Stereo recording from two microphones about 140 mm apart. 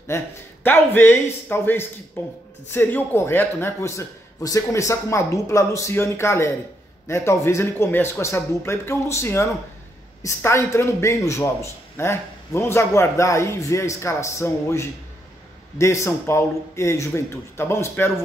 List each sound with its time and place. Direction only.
0.1 s a man's voice: 20° left (ahead or behind)